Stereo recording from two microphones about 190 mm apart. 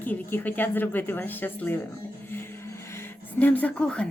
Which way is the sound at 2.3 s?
10° left (ahead or behind).